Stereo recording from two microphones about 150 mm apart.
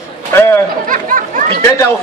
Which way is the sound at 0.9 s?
65° right (ahead or behind).